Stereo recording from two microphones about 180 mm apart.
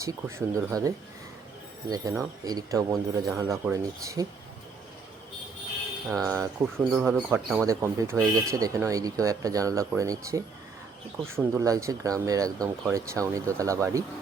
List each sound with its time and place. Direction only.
0.0 s speech: 15° right (ahead or behind)
6.1 s speech: 15° right (ahead or behind)